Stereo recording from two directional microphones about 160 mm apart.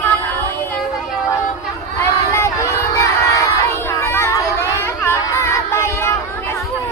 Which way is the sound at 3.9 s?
15° left (ahead or behind).